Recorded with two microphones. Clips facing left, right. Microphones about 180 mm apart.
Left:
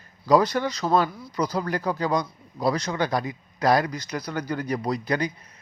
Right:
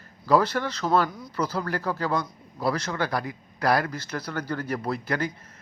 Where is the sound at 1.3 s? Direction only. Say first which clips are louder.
Left 3 dB; 15° left (ahead or behind).